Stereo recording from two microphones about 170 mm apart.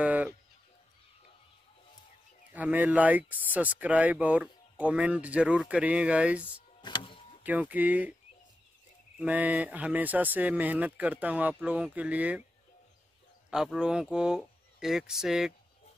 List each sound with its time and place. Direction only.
0.0 s bird: 10° right (ahead or behind)
2.5 s speech: 10° right (ahead or behind)
6.8 s power windows: 30° left (ahead or behind)
7.4 s speech: 10° right (ahead or behind)
9.2 s speech: 10° right (ahead or behind)
13.5 s speech: 5° right (ahead or behind)